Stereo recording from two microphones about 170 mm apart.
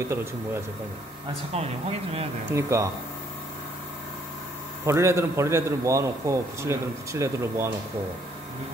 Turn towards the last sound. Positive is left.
turn(degrees=-15)  # may be behind; listen again after turning